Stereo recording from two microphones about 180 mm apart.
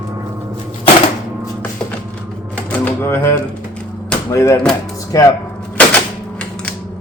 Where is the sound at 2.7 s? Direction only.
15° left (ahead or behind).